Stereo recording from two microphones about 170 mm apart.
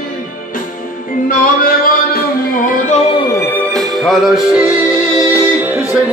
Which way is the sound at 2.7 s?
45° left (ahead or behind).